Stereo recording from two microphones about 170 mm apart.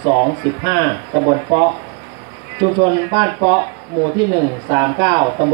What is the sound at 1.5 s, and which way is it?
A man's voice, 30° right (ahead or behind).